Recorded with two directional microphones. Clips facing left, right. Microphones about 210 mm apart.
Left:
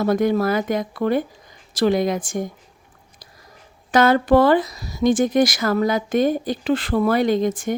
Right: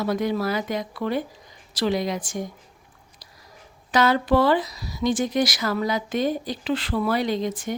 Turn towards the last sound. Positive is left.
turn(degrees=50)  # may be behind; listen again after turning